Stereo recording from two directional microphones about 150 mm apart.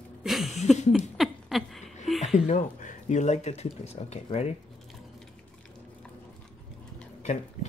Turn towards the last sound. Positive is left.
turn(degrees=50)  # may be behind; listen again after turning